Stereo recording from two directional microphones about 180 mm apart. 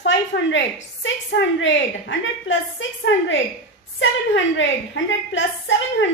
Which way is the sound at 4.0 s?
90° left.